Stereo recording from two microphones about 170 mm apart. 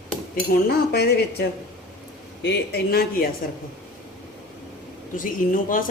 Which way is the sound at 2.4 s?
80° left.